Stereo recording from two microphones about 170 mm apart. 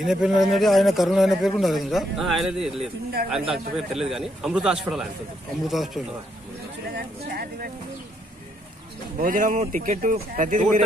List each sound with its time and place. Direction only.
0.0 s a man's voice: centre (ahead or behind)
7.0 s speech: 60° right (ahead or behind)
9.2 s speech: 50° right (ahead or behind)